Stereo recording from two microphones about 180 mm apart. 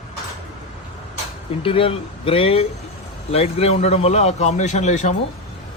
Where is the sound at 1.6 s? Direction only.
30° left (ahead or behind).